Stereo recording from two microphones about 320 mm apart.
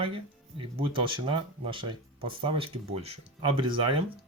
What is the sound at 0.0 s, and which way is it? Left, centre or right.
Speech, centre.